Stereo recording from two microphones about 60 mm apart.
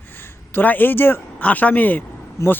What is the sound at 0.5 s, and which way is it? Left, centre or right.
Speech, left.